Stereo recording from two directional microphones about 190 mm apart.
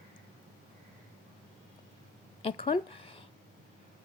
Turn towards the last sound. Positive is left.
turn(degrees=30)  # may be behind; listen again after turning